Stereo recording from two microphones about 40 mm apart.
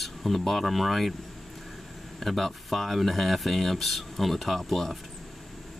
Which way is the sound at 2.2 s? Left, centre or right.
Centre.